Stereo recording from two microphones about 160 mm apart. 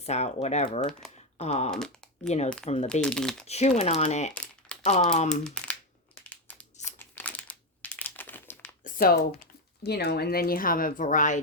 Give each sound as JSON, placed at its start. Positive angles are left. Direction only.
{"t": 0.0, "sound": "speech", "side_deg": 45}
{"t": 1.7, "sound": "speech", "side_deg": 5}
{"t": 3.4, "sound": "speech", "side_deg": 40}
{"t": 5.4, "sound": "speech", "side_deg": 5}
{"t": 6.2, "sound": "crumpling", "side_deg": 10}
{"t": 8.8, "sound": "a sound", "side_deg": 65}
{"t": 9.8, "sound": "speech", "side_deg": 90}